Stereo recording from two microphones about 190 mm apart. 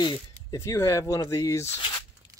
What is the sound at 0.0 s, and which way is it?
Speech, 20° left (ahead or behind).